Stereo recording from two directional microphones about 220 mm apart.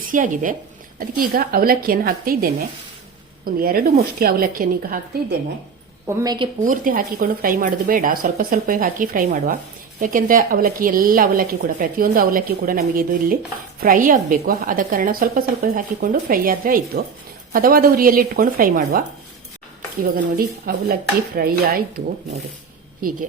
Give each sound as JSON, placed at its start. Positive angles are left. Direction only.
{"t": 0.1, "sound": "a woman's voice", "side_deg": -35}
{"t": 6.1, "sound": "a woman's voice", "side_deg": -15}
{"t": 6.6, "sound": "a woman's voice", "side_deg": -35}
{"t": 20.1, "sound": "a woman's voice", "side_deg": -40}